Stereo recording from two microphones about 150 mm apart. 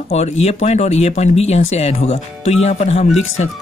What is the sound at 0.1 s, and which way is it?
Speech, 45° left (ahead or behind).